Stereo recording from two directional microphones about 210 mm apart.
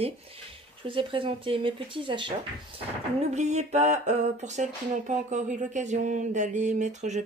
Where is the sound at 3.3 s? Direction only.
35° right (ahead or behind).